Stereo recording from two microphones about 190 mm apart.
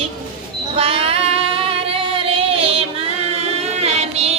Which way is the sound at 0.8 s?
30° right (ahead or behind).